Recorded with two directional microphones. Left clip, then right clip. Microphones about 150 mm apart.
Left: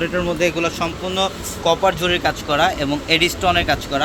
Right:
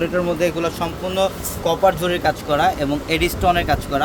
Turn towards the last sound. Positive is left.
turn(degrees=0)  # may be behind; listen again after turning